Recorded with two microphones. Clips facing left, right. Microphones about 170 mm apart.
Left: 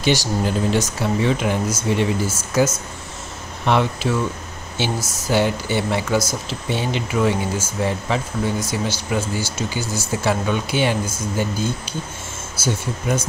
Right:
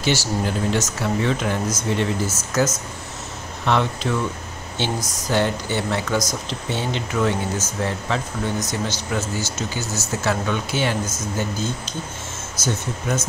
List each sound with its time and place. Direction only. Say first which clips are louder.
0.0 s speech: left 2 dB; 15° left (ahead or behind)